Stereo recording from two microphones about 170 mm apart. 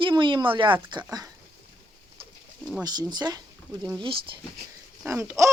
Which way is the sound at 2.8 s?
25° right (ahead or behind).